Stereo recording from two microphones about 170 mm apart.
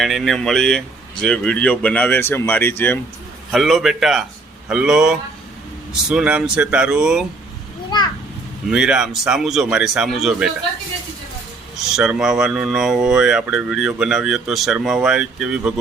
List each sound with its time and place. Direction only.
0.0 s speech: centre (ahead or behind)
3.5 s speech: centre (ahead or behind)
7.9 s a sound: 25° left (ahead or behind)
8.7 s speech: 5° right (ahead or behind)
11.8 s speech: centre (ahead or behind)